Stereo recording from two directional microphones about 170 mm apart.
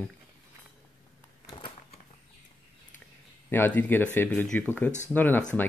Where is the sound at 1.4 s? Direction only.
30° left (ahead or behind).